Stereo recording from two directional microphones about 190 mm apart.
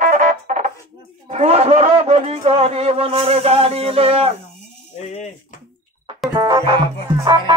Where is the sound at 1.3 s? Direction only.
35° right (ahead or behind).